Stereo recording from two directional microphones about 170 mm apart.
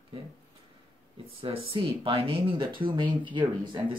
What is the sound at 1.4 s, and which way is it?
Speech, 35° right (ahead or behind).